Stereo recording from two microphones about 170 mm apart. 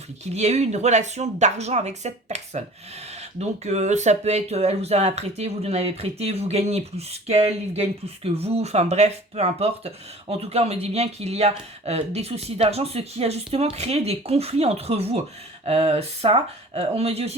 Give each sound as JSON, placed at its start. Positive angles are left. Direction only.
{"t": 0.3, "sound": "speech", "side_deg": -40}